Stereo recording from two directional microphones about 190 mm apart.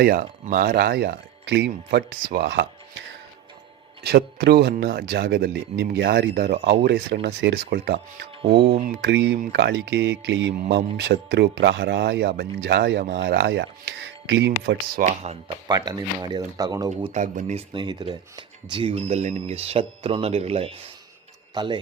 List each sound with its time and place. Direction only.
0.0 s speech: 50° right (ahead or behind)
4.0 s speech: 60° right (ahead or behind)
15.0 s speech: 35° right (ahead or behind)
15.6 s speech: 20° right (ahead or behind)
17.1 s speech: 40° right (ahead or behind)
17.7 s a man's voice: 25° right (ahead or behind)